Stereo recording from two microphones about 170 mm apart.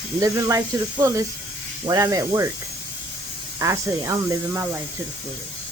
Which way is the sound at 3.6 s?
20° right (ahead or behind).